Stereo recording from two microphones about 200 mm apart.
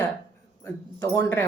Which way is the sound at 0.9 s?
15° left (ahead or behind).